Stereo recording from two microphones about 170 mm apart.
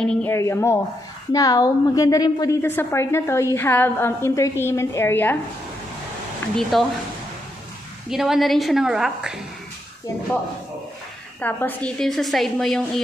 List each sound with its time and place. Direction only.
0.0 s a woman's voice: 5° left (ahead or behind)
6.5 s a woman's voice: centre (ahead or behind)
8.1 s a woman's voice: centre (ahead or behind)
11.4 s a woman's voice: 10° left (ahead or behind)